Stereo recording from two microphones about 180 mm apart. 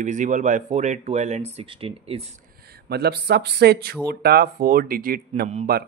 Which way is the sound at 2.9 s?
60° right (ahead or behind).